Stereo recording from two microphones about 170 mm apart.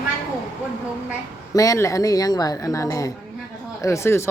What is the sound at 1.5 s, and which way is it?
Speech, 20° left (ahead or behind).